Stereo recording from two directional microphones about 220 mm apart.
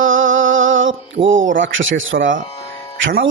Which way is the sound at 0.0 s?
60° right (ahead or behind).